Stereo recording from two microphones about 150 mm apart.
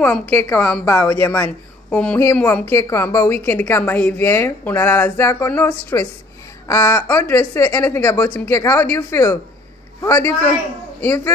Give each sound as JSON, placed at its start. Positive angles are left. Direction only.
{"t": 0.0, "sound": "a woman's voice", "side_deg": 10}